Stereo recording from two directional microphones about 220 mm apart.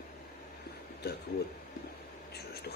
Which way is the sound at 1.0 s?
45° left (ahead or behind).